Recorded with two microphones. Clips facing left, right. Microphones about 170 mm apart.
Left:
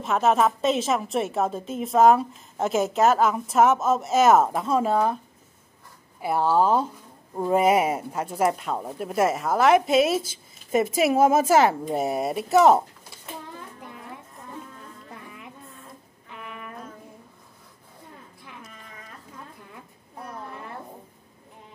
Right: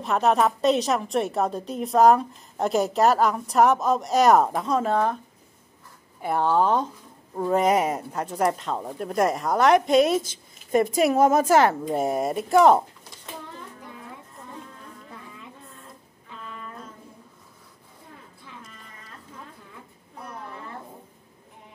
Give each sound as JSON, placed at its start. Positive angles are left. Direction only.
{"t": 0.0, "sound": "a woman's voice", "side_deg": 0}
{"t": 6.2, "sound": "a woman's voice", "side_deg": 5}
{"t": 16.3, "sound": "music", "side_deg": 15}